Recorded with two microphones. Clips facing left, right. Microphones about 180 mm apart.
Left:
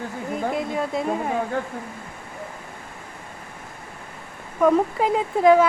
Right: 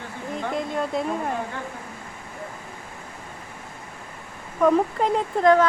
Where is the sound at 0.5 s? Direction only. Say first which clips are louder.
Left 1 dB; centre (ahead or behind).